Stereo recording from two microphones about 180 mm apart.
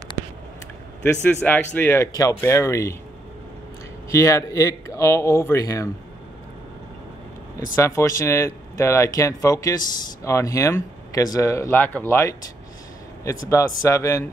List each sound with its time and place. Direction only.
1.0 s speech: 10° left (ahead or behind)
4.1 s speech: 15° left (ahead or behind)
7.6 s speech: 15° left (ahead or behind)
13.5 s speech: 15° left (ahead or behind)